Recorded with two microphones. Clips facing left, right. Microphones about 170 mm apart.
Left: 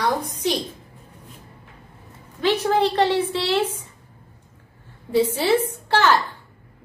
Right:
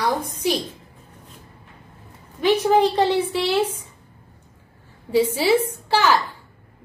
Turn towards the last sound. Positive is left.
turn(degrees=-10)  # may be behind; listen again after turning